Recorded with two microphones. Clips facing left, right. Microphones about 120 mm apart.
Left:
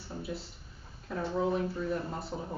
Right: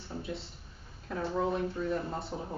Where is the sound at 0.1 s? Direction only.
5° left (ahead or behind).